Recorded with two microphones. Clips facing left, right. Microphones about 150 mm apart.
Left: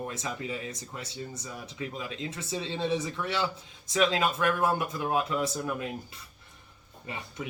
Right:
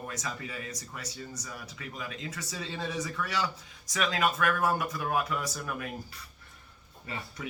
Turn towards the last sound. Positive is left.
turn(degrees=20)  # may be behind; listen again after turning